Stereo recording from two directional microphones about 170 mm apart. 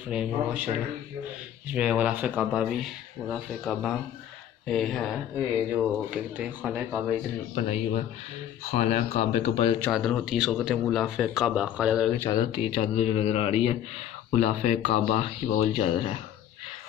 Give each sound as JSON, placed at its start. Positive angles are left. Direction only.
{"t": 0.1, "sound": "speech", "side_deg": -5}
{"t": 7.5, "sound": "a man's voice", "side_deg": 40}
{"t": 9.8, "sound": "speech", "side_deg": 5}
{"t": 12.3, "sound": "speech", "side_deg": 25}
{"t": 12.9, "sound": "a man's voice", "side_deg": 40}